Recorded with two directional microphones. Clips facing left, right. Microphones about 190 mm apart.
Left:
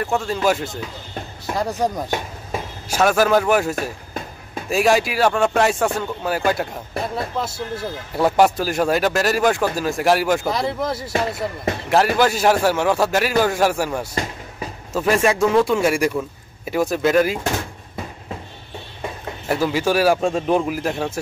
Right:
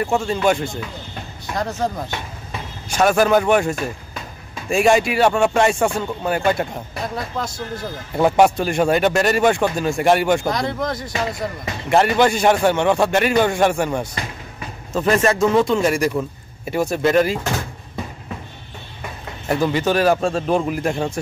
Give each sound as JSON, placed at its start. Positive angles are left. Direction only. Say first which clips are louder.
{"t": 0.0, "sound": "speech", "louder": "right 2 dB", "side_deg": 0}
{"t": 2.0, "sound": "hammer", "louder": "left 4 dB", "side_deg": 45}
{"t": 2.9, "sound": "speech", "louder": "right 1 dB", "side_deg": 5}
{"t": 19.4, "sound": "speech", "louder": "right 1 dB", "side_deg": 5}